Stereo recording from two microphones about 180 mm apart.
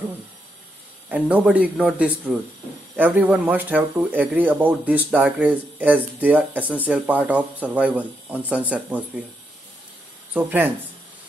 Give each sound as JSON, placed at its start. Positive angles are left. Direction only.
{"t": 1.0, "sound": "speech", "side_deg": -10}
{"t": 10.3, "sound": "speech", "side_deg": -10}